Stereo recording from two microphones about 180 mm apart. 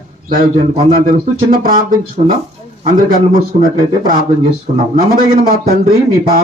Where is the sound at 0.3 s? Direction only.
50° right (ahead or behind).